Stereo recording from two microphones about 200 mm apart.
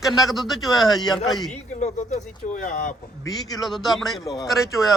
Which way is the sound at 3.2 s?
20° left (ahead or behind).